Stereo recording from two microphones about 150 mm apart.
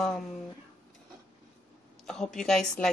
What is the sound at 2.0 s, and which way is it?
Speech, 5° left (ahead or behind).